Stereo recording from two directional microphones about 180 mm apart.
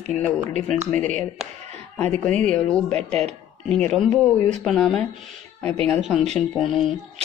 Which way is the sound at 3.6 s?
Centre (ahead or behind).